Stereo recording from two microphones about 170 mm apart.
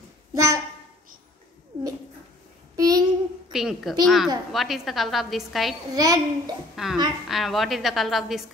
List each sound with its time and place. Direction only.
0.3 s a sound: 20° right (ahead or behind)
2.7 s child singing: 20° right (ahead or behind)
3.5 s a woman's voice: centre (ahead or behind)
5.9 s a child's voice: 20° right (ahead or behind)
6.7 s a woman's voice: centre (ahead or behind)